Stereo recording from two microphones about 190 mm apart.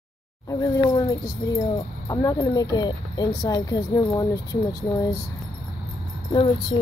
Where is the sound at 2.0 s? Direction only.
20° left (ahead or behind).